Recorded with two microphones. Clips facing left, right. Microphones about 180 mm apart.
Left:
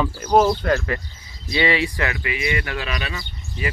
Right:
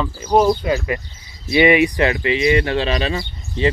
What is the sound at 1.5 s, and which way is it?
Speech, 15° right (ahead or behind).